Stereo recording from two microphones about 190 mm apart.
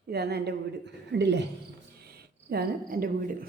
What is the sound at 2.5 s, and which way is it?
Speech, 50° right (ahead or behind).